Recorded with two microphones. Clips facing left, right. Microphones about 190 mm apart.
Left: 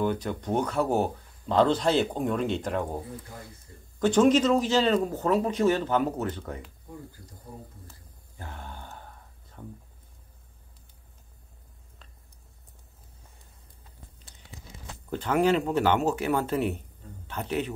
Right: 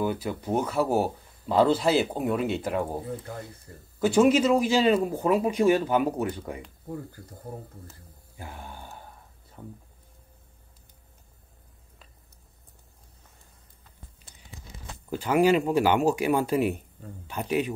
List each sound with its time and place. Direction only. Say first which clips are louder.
0.0 s speech: even; 5° right (ahead or behind)
3.7 s speech: right 4 dB; 60° right (ahead or behind)
4.0 s speech: even; 10° right (ahead or behind)
7.8 s a sound: right 3 dB; 5° right (ahead or behind)
9.6 s speech: even; 10° right (ahead or behind)
15.0 s speech: right 2 dB; 10° right (ahead or behind)